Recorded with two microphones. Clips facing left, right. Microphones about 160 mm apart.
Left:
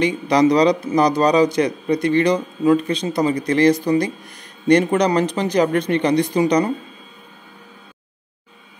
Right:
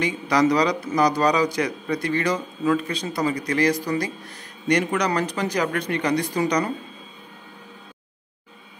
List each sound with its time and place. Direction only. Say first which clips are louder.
0.0 s a man's voice: left 5 dB; 20° left (ahead or behind)